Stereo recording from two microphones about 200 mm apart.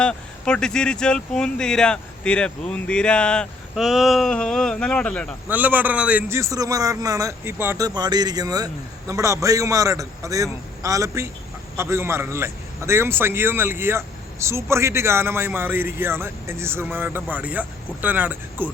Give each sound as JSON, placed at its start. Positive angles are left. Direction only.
{"t": 0.0, "sound": "speech", "side_deg": 5}
{"t": 5.5, "sound": "a man's voice", "side_deg": -10}